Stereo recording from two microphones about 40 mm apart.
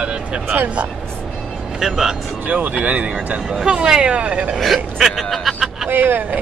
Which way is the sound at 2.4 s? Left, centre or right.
Right.